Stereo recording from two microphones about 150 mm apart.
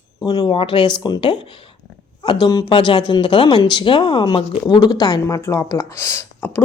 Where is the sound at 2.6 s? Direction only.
35° left (ahead or behind); by 6.6 s 15° left (ahead or behind).